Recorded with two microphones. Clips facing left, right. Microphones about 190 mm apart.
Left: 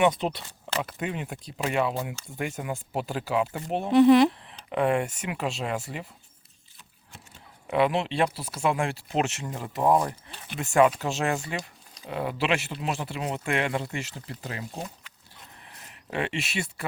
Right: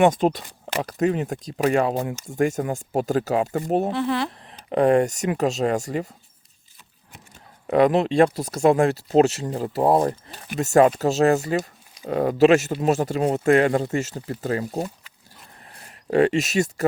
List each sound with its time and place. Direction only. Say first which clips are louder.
0.0 s speech: right 6 dB; 45° right (ahead or behind)
3.9 s speech: left 8 dB; 15° left (ahead or behind)
4.4 s speech: right 6 dB; 40° right (ahead or behind)
7.7 s speech: right 7 dB; 40° right (ahead or behind)